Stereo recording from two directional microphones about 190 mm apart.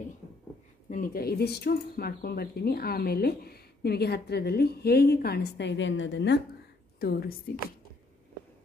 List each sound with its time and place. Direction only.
0.8 s speech: 45° left (ahead or behind); by 6.4 s 65° left (ahead or behind)
7.0 s speech: 55° left (ahead or behind)